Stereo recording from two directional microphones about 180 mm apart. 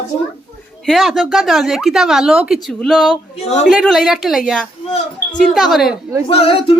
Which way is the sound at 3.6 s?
Centre (ahead or behind).